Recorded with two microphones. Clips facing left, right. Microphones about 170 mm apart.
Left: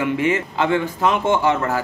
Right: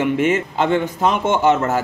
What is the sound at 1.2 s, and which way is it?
Speech, 20° right (ahead or behind).